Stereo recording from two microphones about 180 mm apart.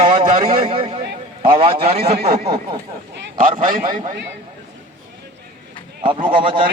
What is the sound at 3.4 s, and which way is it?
Speech, 50° right (ahead or behind).